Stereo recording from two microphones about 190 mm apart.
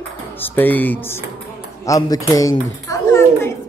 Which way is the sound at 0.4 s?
10° left (ahead or behind).